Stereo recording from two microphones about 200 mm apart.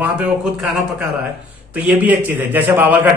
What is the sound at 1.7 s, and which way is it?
A man's voice, 10° right (ahead or behind).